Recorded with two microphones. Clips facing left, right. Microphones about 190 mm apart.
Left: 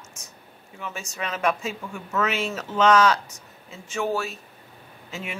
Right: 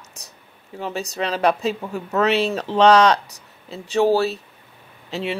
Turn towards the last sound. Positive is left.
turn(degrees=-35)  # may be behind; listen again after turning